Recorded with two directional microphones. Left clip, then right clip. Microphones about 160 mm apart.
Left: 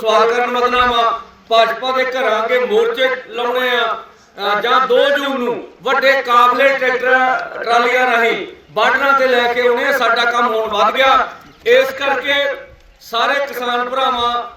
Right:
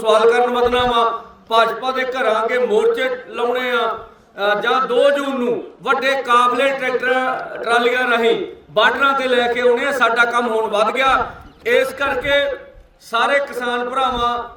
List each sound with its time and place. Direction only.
0.0 s a man's voice: 30° right (ahead or behind)